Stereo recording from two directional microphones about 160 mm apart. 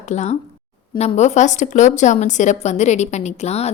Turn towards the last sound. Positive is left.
turn(degrees=40)  # may be behind; listen again after turning